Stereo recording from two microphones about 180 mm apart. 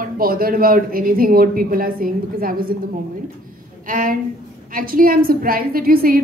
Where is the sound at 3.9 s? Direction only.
50° right (ahead or behind).